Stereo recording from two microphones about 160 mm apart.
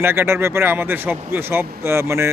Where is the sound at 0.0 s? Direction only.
15° right (ahead or behind).